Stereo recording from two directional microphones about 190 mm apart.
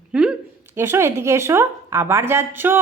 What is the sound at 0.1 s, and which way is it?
A woman's voice, 5° right (ahead or behind).